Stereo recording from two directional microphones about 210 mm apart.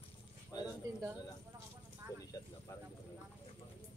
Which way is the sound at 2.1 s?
15° left (ahead or behind).